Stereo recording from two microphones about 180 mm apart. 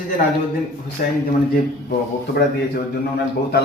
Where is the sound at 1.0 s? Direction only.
50° left (ahead or behind).